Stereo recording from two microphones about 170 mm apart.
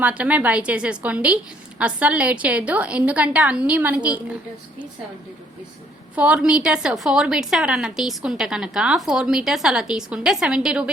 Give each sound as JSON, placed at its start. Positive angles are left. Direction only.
{"t": 0.0, "sound": "a woman's voice", "side_deg": -10}
{"t": 6.1, "sound": "a woman's voice", "side_deg": -5}